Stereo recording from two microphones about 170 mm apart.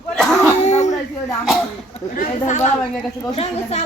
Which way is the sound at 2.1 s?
45° left (ahead or behind).